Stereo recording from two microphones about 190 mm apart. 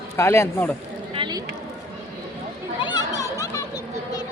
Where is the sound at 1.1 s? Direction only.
25° right (ahead or behind).